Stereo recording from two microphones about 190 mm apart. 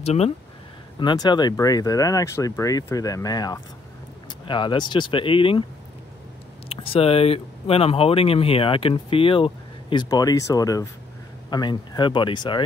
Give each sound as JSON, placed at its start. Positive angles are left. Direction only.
{"t": 0.0, "sound": "speech", "side_deg": 35}
{"t": 0.9, "sound": "speech", "side_deg": 20}
{"t": 6.7, "sound": "speech", "side_deg": 30}